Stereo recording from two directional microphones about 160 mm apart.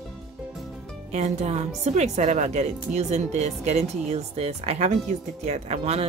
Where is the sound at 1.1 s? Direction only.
45° right (ahead or behind).